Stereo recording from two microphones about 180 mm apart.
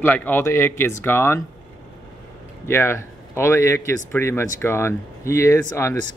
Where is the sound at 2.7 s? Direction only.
15° left (ahead or behind).